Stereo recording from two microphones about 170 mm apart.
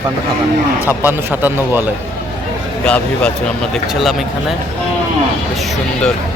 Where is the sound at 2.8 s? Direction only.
5° left (ahead or behind).